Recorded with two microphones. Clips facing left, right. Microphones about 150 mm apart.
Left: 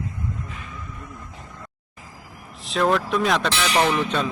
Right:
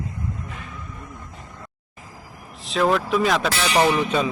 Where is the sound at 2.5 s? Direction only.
Centre (ahead or behind).